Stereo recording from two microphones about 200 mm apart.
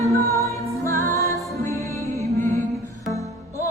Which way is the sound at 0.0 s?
15° left (ahead or behind).